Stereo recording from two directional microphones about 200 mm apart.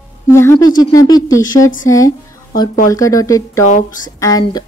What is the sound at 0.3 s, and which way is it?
A woman's voice, 15° left (ahead or behind).